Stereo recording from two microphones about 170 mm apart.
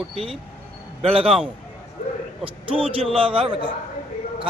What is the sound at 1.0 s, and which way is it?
Speech, 30° right (ahead or behind).